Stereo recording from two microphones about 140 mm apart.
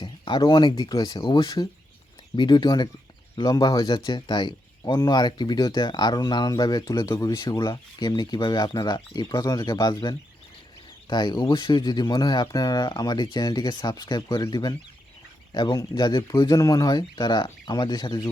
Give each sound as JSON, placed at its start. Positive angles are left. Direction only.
{"t": 0.0, "sound": "speech", "side_deg": 35}